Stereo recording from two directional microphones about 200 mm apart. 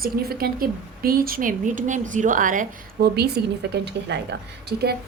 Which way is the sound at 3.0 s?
50° right (ahead or behind).